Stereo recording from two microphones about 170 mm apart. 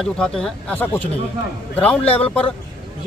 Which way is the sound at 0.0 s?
5° left (ahead or behind).